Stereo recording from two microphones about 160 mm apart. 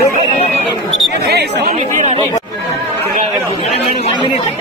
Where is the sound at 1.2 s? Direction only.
90° right.